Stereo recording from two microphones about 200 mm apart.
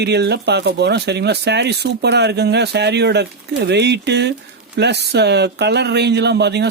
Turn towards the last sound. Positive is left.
turn(degrees=-55)  # may be behind; listen again after turning